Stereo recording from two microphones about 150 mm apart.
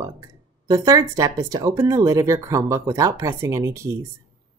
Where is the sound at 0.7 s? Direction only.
20° right (ahead or behind).